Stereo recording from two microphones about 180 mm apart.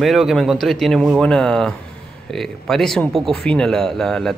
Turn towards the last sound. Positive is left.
turn(degrees=5)  # may be behind; listen again after turning